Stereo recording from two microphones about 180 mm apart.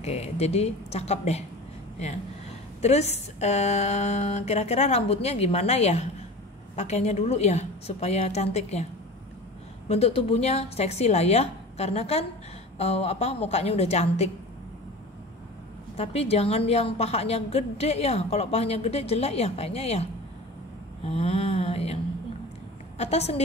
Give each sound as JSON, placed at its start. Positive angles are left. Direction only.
{"t": 0.0, "sound": "a woman's voice", "side_deg": 35}
{"t": 2.8, "sound": "a woman's voice", "side_deg": 40}
{"t": 9.8, "sound": "a woman's voice", "side_deg": 35}
{"t": 16.0, "sound": "a woman's voice", "side_deg": 35}
{"t": 21.0, "sound": "a sound", "side_deg": 35}
{"t": 22.9, "sound": "a woman's voice", "side_deg": 35}